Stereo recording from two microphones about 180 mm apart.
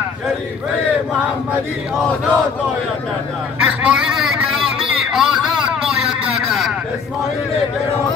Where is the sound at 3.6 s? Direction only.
5° right (ahead or behind).